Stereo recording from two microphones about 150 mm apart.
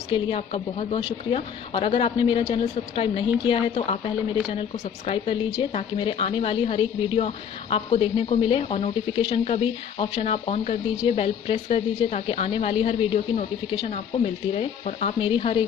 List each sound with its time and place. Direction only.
0.1 s speech: 40° left (ahead or behind)
15.1 s speech: 35° left (ahead or behind)